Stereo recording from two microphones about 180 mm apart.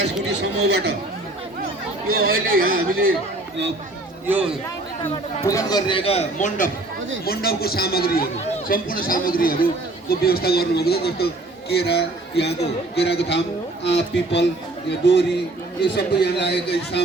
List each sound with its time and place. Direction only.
0.3 s speech: 65° right (ahead or behind)
2.1 s speech: 60° right (ahead or behind)
5.4 s speech: 20° left (ahead or behind); by 6.7 s 40° left (ahead or behind)
7.3 s a man's voice: 60° left (ahead or behind)